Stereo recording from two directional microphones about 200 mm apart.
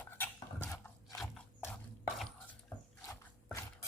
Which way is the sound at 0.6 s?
15° left (ahead or behind).